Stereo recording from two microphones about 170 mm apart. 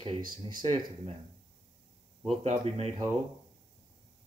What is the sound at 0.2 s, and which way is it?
Speech, 55° right (ahead or behind).